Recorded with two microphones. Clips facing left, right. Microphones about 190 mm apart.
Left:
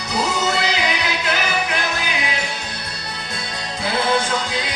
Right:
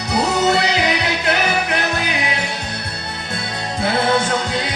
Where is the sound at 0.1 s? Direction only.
60° right (ahead or behind).